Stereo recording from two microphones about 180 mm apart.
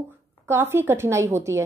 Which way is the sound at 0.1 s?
15° right (ahead or behind).